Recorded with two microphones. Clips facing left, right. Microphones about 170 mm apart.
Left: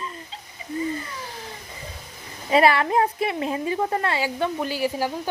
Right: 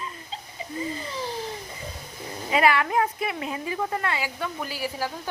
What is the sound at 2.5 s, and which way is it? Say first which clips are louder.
A woman's voice: left 4 dB; 35° left (ahead or behind).